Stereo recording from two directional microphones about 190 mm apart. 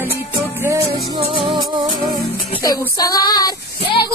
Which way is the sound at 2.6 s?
20° left (ahead or behind).